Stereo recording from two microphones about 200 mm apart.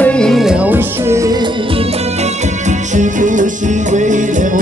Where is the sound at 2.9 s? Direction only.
40° right (ahead or behind).